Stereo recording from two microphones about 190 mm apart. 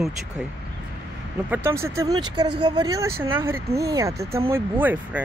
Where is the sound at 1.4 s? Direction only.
15° right (ahead or behind).